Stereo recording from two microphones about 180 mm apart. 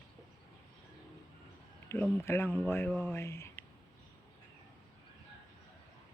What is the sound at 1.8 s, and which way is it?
Speech, 15° left (ahead or behind).